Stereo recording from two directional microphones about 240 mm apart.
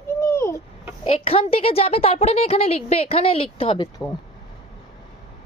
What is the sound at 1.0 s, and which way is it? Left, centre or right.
Speech, left.